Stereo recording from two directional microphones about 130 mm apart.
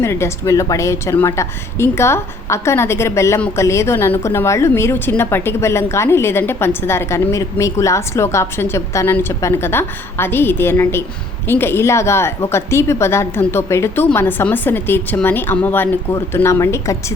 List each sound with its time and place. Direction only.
0.0 s a woman's voice: 20° left (ahead or behind)